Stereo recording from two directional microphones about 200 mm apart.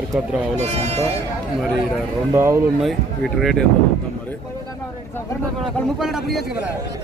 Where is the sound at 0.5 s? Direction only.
30° right (ahead or behind).